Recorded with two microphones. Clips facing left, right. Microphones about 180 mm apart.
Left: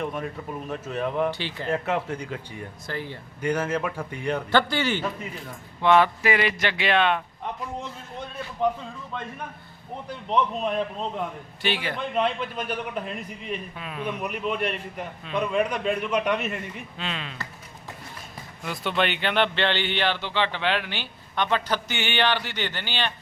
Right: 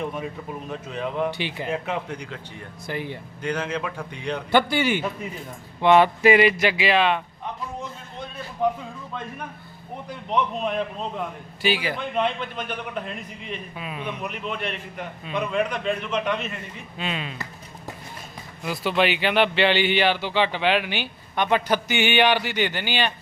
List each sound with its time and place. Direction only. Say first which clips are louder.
0.7 s a man's voice: left 2 dB; centre (ahead or behind)
1.3 s speech: right 1 dB; 15° right (ahead or behind)
1.7 s a man's voice: left 5 dB; centre (ahead or behind)
2.8 s speech: right 4 dB; 15° right (ahead or behind)
3.4 s a man's voice: left 2 dB; 10° left (ahead or behind)
4.5 s speech: right 4 dB; 10° right (ahead or behind)
10.2 s a man's voice: even; centre (ahead or behind)
13.5 s a man's voice: even; 5° right (ahead or behind)
14.2 s a man's voice: left 3 dB; 5° left (ahead or behind)
17.0 s speech: right 4 dB; 10° right (ahead or behind)
18.6 s speech: right 3 dB; 5° right (ahead or behind)